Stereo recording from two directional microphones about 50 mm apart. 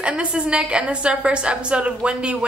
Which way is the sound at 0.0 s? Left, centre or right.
Right.